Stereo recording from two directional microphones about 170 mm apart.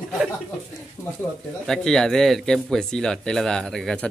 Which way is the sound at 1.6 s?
5° left (ahead or behind).